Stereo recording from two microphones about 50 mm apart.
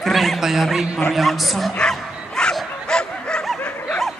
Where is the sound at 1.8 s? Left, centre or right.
Centre.